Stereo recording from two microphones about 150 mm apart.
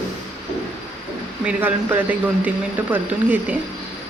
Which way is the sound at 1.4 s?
10° right (ahead or behind).